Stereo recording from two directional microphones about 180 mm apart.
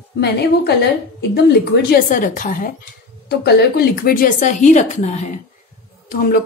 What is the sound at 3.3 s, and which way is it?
A woman's voice, 60° left (ahead or behind).